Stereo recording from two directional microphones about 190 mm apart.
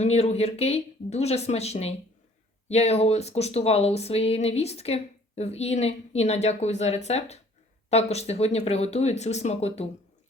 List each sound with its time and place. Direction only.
0.0 s speech: 35° left (ahead or behind)